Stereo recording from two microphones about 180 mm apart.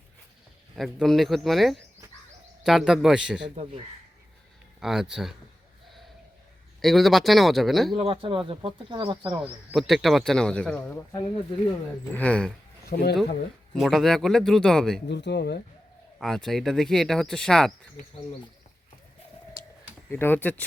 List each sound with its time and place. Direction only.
0.8 s speech: centre (ahead or behind)
3.4 s speech: 35° right (ahead or behind)
4.8 s speech: 5° right (ahead or behind)
6.8 s speech: centre (ahead or behind)
7.9 s speech: 30° right (ahead or behind)
9.4 s speech: centre (ahead or behind)
12.1 s speech: 5° left (ahead or behind)
12.9 s speech: 60° left (ahead or behind)
13.7 s speech: centre (ahead or behind)
15.0 s speech: 70° left (ahead or behind)
16.1 s speech: centre (ahead or behind)
20.1 s speech: 10° left (ahead or behind)